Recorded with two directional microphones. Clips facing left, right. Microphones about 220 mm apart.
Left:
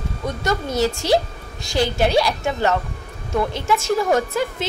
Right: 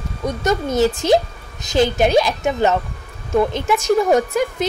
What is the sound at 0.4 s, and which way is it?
A woman's voice, 20° right (ahead or behind).